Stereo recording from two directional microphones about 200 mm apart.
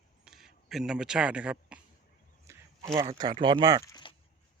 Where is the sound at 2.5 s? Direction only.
15° right (ahead or behind).